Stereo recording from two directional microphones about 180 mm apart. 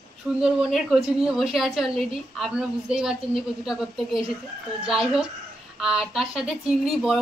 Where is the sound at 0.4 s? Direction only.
5° right (ahead or behind).